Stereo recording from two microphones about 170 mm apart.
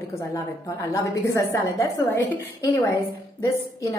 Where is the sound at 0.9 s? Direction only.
20° left (ahead or behind).